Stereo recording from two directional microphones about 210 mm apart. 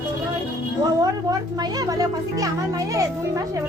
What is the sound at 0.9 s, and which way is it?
A woman's voice, 20° right (ahead or behind).